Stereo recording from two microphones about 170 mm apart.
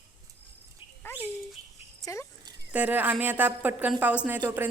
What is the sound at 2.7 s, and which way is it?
A woman's voice, 10° right (ahead or behind).